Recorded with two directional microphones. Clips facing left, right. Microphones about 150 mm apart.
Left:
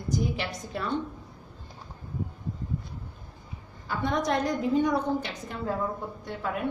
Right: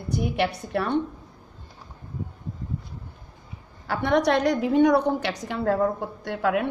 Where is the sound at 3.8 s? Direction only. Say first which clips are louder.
Right 6 dB; 75° right (ahead or behind).